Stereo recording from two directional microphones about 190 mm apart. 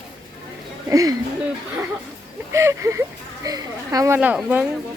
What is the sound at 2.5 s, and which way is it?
Speech, 15° right (ahead or behind).